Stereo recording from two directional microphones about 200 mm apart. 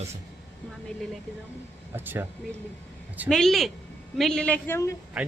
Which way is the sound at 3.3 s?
Centre (ahead or behind).